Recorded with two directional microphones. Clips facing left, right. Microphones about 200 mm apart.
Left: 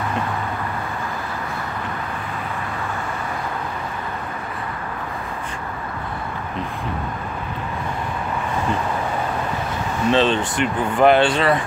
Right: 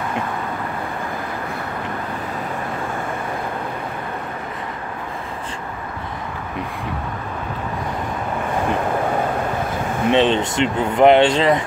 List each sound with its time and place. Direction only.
10.0 s speech: 20° right (ahead or behind)